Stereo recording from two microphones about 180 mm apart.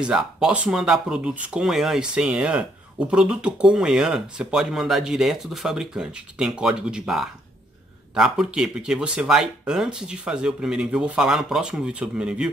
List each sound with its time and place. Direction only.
0.0 s speech: 5° right (ahead or behind)